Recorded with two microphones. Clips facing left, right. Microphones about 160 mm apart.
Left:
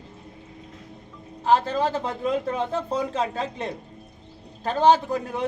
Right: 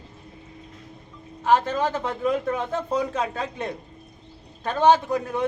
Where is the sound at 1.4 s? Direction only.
30° left (ahead or behind).